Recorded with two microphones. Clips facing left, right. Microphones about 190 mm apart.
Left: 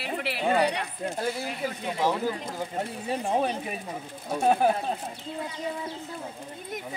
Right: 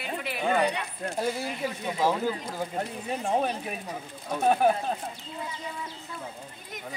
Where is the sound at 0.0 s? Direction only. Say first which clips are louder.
Left 2 dB; 70° left (ahead or behind).